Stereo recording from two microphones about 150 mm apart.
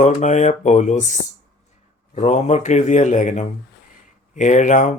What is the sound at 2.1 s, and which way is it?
Speech, 50° left (ahead or behind).